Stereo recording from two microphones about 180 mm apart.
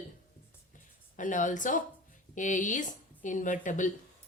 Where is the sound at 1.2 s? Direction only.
45° left (ahead or behind).